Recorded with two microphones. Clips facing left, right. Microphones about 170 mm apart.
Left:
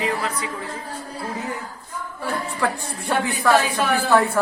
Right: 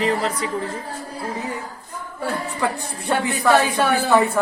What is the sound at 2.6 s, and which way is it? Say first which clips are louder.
A woman's voice: even; 15° right (ahead or behind).